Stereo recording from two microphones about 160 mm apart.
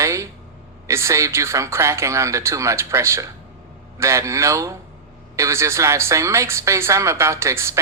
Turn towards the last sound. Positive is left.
turn(degrees=-15)  # may be behind; listen again after turning